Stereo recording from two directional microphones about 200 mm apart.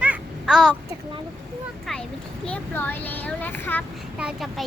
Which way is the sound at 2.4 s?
5° left (ahead or behind).